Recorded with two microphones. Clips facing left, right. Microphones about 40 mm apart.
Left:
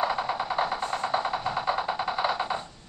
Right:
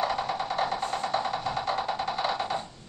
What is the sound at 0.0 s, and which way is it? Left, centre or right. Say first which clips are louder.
Music: left 1 dB; centre.